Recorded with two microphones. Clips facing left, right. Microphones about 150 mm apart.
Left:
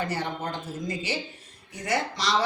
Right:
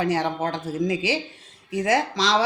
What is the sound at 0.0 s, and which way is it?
Speech, 90° right.